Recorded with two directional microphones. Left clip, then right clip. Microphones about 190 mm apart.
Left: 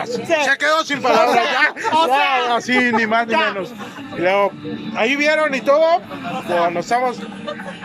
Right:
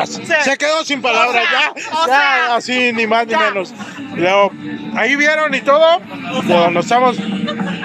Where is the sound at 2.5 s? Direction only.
5° right (ahead or behind).